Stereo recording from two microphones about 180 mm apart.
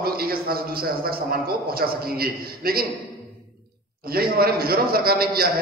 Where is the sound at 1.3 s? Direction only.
55° right (ahead or behind).